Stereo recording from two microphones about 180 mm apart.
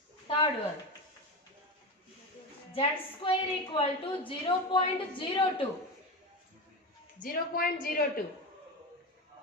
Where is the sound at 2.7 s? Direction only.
30° left (ahead or behind).